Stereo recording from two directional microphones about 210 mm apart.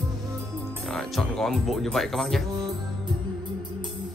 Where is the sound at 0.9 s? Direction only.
Centre (ahead or behind).